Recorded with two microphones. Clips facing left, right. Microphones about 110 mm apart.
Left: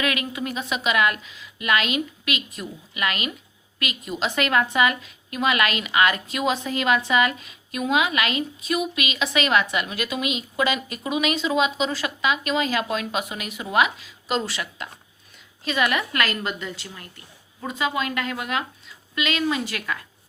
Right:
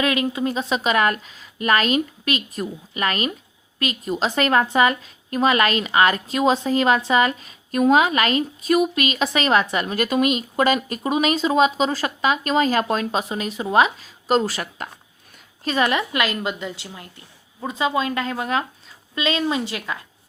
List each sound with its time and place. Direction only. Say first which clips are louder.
0.0 s a woman's voice: right 5 dB; 30° right (ahead or behind)